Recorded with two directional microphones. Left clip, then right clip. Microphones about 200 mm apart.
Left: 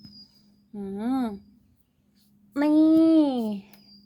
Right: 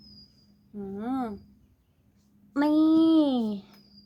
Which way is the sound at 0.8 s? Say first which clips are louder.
Left 3 dB; 35° left (ahead or behind).